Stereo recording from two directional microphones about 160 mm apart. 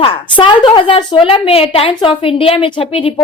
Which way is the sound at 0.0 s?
30° left (ahead or behind).